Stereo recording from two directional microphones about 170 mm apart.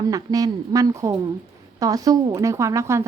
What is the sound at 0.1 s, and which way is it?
A woman's voice, 20° right (ahead or behind).